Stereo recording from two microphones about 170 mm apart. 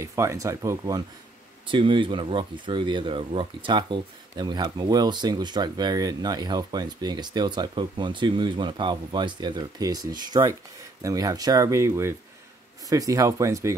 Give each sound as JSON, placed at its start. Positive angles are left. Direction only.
{"t": 0.0, "sound": "speech", "side_deg": -15}